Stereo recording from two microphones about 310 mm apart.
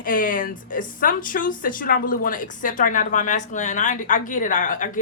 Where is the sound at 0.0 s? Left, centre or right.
Left.